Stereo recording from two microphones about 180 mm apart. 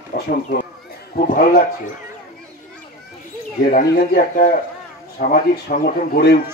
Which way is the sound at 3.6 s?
50° left (ahead or behind).